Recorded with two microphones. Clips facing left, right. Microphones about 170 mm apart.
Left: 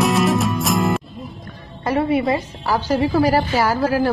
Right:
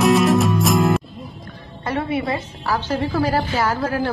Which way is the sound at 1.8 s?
10° left (ahead or behind).